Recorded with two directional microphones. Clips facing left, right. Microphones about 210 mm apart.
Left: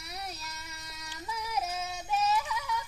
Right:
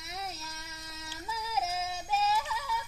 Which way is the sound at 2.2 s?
30° right (ahead or behind).